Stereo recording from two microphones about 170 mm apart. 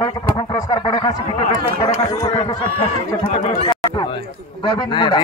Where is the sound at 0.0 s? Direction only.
25° left (ahead or behind).